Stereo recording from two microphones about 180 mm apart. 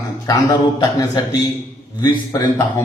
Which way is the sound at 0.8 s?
20° left (ahead or behind).